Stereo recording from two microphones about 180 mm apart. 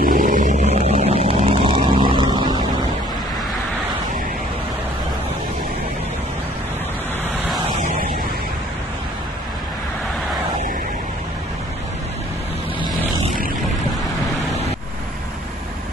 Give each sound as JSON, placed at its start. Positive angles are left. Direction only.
{"t": 0.0, "sound": "vehicle", "side_deg": -50}